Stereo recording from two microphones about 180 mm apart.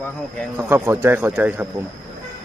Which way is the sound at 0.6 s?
10° right (ahead or behind).